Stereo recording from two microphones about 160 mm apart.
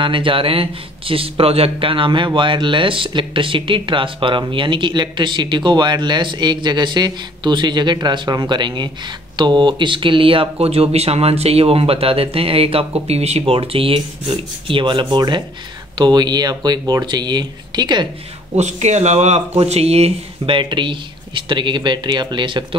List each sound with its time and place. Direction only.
0.0 s a man's voice: 30° right (ahead or behind)
18.6 s a man's voice: 45° right (ahead or behind)